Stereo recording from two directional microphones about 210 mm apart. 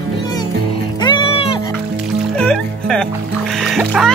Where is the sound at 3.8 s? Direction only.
Centre (ahead or behind).